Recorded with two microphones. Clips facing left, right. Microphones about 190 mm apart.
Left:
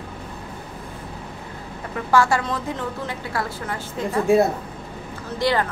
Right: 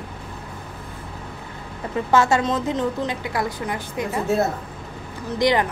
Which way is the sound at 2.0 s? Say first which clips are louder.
Right 1 dB; 20° right (ahead or behind).